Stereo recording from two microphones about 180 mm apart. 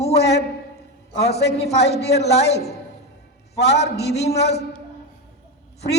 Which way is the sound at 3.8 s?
65° left (ahead or behind).